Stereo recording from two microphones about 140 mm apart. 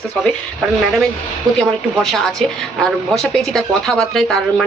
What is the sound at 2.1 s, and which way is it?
Speech, centre (ahead or behind).